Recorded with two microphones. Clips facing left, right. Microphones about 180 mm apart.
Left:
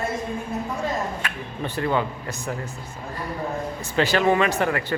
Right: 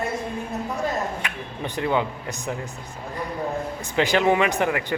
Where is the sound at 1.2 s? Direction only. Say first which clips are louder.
Left 1 dB; 15° right (ahead or behind).